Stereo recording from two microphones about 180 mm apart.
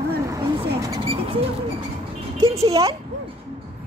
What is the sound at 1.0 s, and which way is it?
Speech, 30° right (ahead or behind).